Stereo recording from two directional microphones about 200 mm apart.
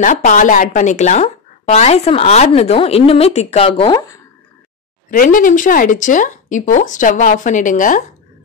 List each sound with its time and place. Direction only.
0.0 s speech: 40° left (ahead or behind); by 4.2 s 25° left (ahead or behind)
5.1 s speech: 40° left (ahead or behind)